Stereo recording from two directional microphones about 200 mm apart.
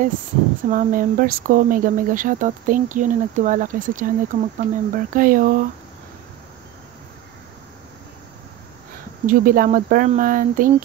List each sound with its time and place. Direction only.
0.7 s speech: 45° right (ahead or behind)
9.2 s speech: 45° right (ahead or behind)